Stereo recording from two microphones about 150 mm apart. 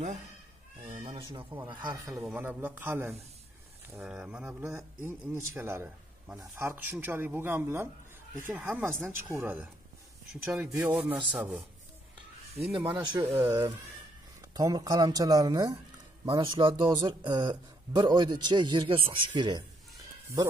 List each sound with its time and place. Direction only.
0.8 s a sound: 45° right (ahead or behind)
1.7 s speech: 30° right (ahead or behind)
2.0 s speech: centre (ahead or behind)
2.3 s speech: 10° right (ahead or behind)
10.3 s speech: 5° right (ahead or behind)
12.7 s speech: 35° right (ahead or behind)